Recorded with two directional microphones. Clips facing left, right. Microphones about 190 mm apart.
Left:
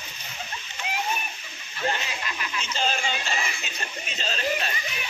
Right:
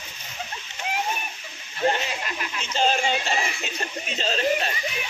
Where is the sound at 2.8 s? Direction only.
35° right (ahead or behind).